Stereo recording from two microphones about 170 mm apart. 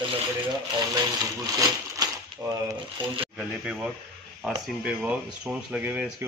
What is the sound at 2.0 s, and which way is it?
Coin, 20° right (ahead or behind).